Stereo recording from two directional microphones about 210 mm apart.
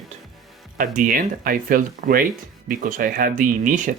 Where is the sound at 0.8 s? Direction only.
40° right (ahead or behind).